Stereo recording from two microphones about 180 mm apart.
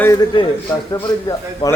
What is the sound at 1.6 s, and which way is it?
Speech, 25° left (ahead or behind).